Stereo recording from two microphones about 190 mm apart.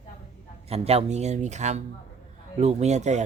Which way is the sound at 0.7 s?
30° right (ahead or behind).